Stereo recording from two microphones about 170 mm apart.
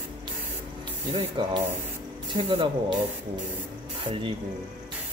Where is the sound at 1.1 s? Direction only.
35° right (ahead or behind).